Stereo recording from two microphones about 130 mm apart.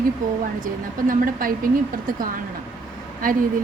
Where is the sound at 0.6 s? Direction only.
90° right.